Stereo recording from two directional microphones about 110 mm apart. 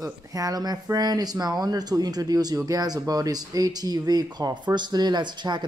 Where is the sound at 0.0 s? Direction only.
30° right (ahead or behind).